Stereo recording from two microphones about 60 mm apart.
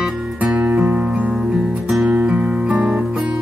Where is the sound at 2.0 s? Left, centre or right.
Right.